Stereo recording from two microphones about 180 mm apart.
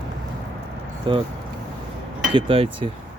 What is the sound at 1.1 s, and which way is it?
Speech, 25° right (ahead or behind).